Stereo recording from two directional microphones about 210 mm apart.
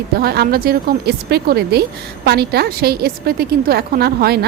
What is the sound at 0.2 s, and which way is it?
A woman's voice, 45° right (ahead or behind).